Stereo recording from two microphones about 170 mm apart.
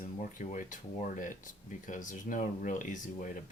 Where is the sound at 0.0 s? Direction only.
50° left (ahead or behind).